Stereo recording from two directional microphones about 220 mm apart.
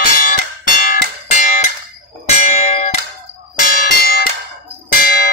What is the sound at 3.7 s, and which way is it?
Bell, 40° left (ahead or behind).